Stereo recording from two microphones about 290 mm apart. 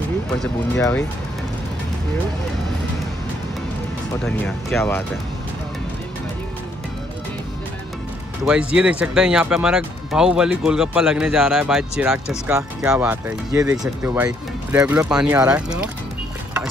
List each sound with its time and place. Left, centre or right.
0.4 s speech: centre
4.2 s speech: centre
8.5 s speech: centre